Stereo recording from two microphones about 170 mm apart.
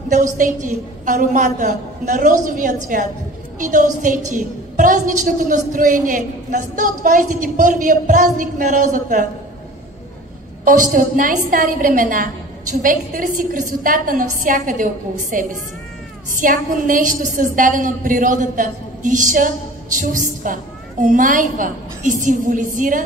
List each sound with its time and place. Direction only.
0.1 s a woman's voice: 50° right (ahead or behind)
10.6 s a woman's voice: 50° right (ahead or behind)